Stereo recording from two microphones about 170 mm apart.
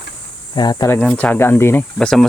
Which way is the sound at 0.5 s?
25° left (ahead or behind).